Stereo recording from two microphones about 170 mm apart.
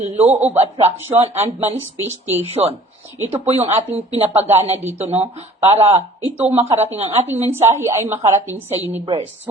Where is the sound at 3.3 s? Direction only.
35° right (ahead or behind).